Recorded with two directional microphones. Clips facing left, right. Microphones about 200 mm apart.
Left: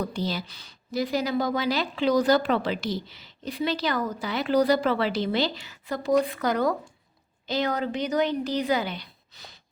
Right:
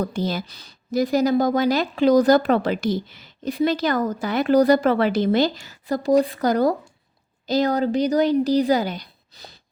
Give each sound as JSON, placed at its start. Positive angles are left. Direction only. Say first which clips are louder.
{"t": 0.0, "sound": "a woman's voice", "louder": "right 5 dB", "side_deg": -50}